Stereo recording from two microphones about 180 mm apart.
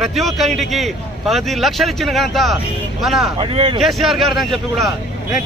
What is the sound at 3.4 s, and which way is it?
Speech, 30° right (ahead or behind).